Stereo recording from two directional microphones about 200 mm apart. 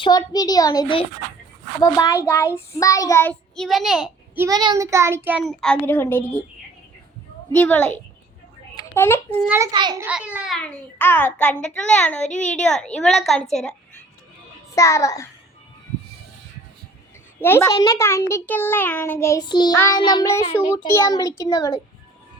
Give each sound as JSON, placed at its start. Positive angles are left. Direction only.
{"t": 0.0, "sound": "a child's voice", "side_deg": 20}
{"t": 1.8, "sound": "child singing", "side_deg": 20}
{"t": 2.7, "sound": "a child's voice", "side_deg": 15}
{"t": 4.4, "sound": "a child's voice", "side_deg": -20}
{"t": 7.5, "sound": "child singing", "side_deg": 10}
{"t": 8.7, "sound": "a child's voice", "side_deg": 15}
{"t": 9.6, "sound": "a child's voice", "side_deg": -20}
{"t": 10.1, "sound": "child singing", "side_deg": -5}
{"t": 12.2, "sound": "a child's voice", "side_deg": 35}
{"t": 12.6, "sound": "a child's voice", "side_deg": 5}
{"t": 14.8, "sound": "child singing", "side_deg": 15}
{"t": 17.4, "sound": "child singing", "side_deg": 10}